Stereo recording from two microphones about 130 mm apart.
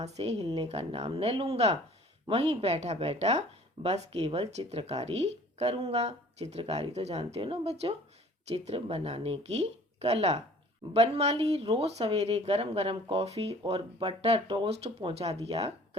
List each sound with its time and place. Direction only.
0.0 s speech: 50° right (ahead or behind)